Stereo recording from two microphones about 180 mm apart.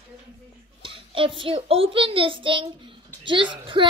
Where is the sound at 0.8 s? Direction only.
30° right (ahead or behind).